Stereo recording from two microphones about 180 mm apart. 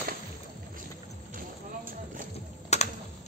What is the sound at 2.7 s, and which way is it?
Computer keyboard, 35° left (ahead or behind).